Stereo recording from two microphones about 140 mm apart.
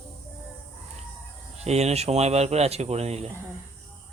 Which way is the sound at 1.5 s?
50° right (ahead or behind).